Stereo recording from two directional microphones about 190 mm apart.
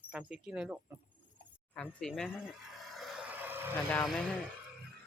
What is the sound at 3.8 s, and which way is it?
Speech, 5° left (ahead or behind).